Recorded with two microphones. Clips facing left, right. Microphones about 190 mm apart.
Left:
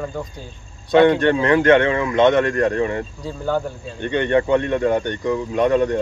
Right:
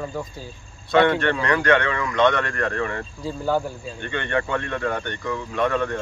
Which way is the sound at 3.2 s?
5° right (ahead or behind).